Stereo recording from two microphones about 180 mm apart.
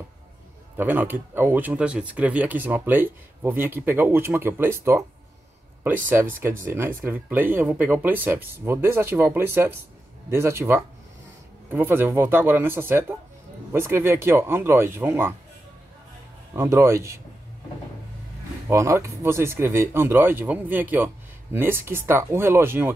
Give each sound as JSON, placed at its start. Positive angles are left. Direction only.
{"t": 0.7, "sound": "speech", "side_deg": -10}
{"t": 7.0, "sound": "speech", "side_deg": -10}
{"t": 16.5, "sound": "speech", "side_deg": -15}
{"t": 18.7, "sound": "speech", "side_deg": -15}